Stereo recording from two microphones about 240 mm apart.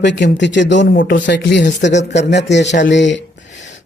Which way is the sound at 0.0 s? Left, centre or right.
Left.